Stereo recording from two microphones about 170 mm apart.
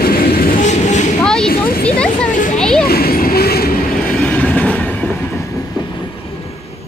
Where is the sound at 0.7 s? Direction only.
45° left (ahead or behind).